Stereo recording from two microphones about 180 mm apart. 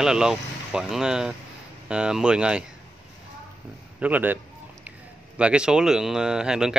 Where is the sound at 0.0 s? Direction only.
5° right (ahead or behind).